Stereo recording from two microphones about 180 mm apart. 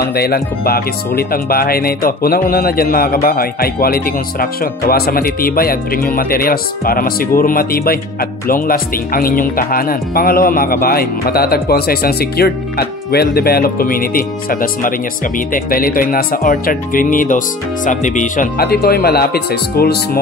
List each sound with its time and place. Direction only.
0.1 s speech: 60° left (ahead or behind)